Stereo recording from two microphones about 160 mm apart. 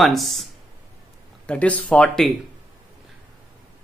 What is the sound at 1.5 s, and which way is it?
Speech, 10° left (ahead or behind).